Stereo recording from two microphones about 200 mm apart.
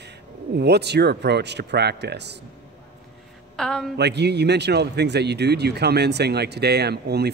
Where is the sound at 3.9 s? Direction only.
55° right (ahead or behind).